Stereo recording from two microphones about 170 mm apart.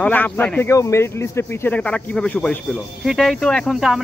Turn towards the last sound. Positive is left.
turn(degrees=0)  # may be behind; listen again after turning